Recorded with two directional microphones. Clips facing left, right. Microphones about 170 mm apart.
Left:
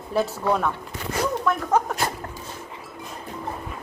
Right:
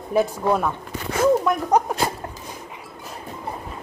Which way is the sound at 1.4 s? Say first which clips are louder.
Right 2 dB; 20° right (ahead or behind).